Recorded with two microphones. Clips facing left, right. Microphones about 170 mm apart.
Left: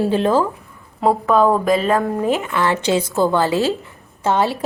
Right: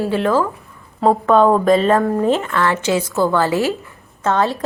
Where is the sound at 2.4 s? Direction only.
15° left (ahead or behind).